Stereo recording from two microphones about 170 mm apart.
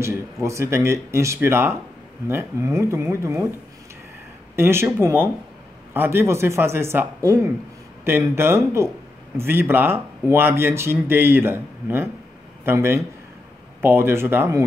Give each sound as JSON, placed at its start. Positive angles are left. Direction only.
{"t": 0.0, "sound": "speech", "side_deg": -15}
{"t": 4.6, "sound": "speech", "side_deg": -15}